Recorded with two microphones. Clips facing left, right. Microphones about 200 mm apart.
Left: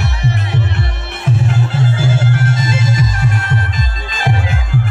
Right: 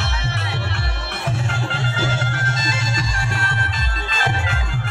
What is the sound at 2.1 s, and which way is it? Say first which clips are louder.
Music: left 9 dB; 25° left (ahead or behind).